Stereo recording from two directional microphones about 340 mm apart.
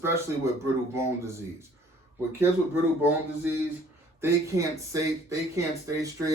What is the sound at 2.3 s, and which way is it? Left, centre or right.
Speech, centre.